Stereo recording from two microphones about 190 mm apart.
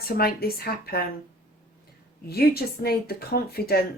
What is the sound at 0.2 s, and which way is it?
Speech, 50° left (ahead or behind).